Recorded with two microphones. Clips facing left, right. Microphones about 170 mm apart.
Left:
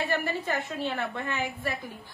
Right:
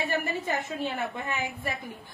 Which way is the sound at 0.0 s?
20° right (ahead or behind).